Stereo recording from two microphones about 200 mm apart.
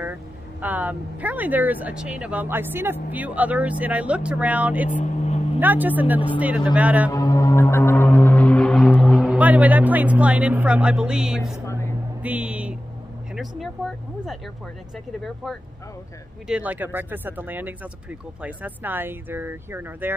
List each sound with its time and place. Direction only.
0.0 s speech: 10° right (ahead or behind)
4.8 s speech: 40° left (ahead or behind)
5.6 s speech: 10° right (ahead or behind)
7.1 s music: 15° left (ahead or behind); by 11.5 s 5° right (ahead or behind)
11.5 s music: 15° left (ahead or behind)
12.2 s music: 5° right (ahead or behind)
16.4 s speech: 5° right (ahead or behind)